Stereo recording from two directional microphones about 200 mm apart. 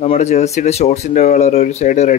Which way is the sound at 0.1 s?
35° left (ahead or behind).